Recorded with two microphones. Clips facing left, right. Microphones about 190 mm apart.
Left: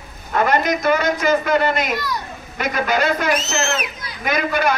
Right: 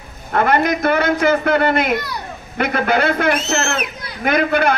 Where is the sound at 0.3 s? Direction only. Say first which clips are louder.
Right 2 dB; 55° right (ahead or behind).